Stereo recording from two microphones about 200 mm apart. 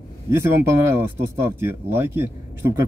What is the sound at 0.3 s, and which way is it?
Speech, 15° right (ahead or behind).